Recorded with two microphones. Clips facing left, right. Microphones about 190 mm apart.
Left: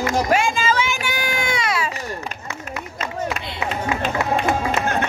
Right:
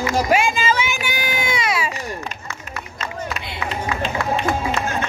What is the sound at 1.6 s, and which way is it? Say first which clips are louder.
Baby cry: right 1 dB; 15° right (ahead or behind).